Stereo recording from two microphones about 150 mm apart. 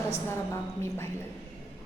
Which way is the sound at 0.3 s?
20° left (ahead or behind).